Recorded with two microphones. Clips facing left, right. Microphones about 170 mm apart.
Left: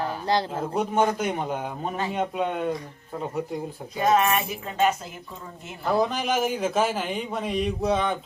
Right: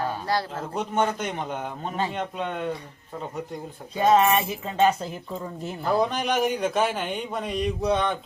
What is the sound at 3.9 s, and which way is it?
Music, 25° right (ahead or behind).